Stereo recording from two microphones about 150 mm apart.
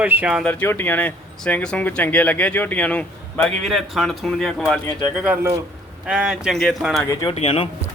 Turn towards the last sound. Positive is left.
turn(degrees=40)  # may be behind; listen again after turning